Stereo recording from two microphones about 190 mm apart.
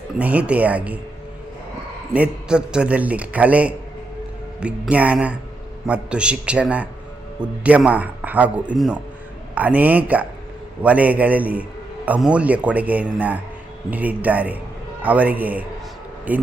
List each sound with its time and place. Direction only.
0.2 s a man's voice: 10° right (ahead or behind)
2.1 s a man's voice: 5° right (ahead or behind)